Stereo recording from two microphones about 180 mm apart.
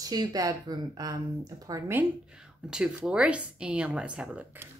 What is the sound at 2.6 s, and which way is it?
A woman's voice, 5° right (ahead or behind).